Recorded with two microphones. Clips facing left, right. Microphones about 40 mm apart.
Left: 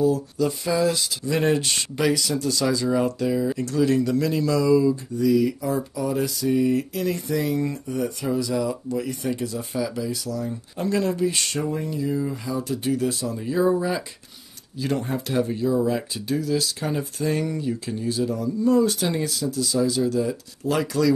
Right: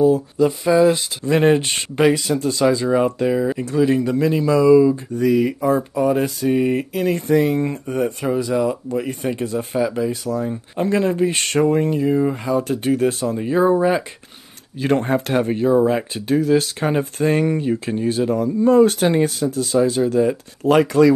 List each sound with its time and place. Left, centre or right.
0.0 s speech: right
5.1 s speech: right